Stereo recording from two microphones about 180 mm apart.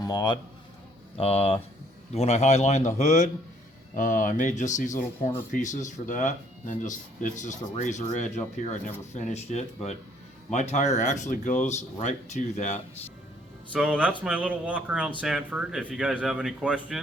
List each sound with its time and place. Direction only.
0.0 s a man's voice: 25° left (ahead or behind)
1.2 s speech: 35° left (ahead or behind)
13.7 s speech: 5° right (ahead or behind)